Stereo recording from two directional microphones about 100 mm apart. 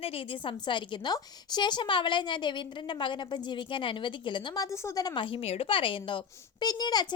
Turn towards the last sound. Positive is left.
turn(degrees=40)  # may be behind; listen again after turning